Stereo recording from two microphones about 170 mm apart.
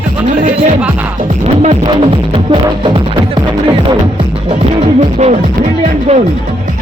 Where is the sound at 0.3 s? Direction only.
50° right (ahead or behind).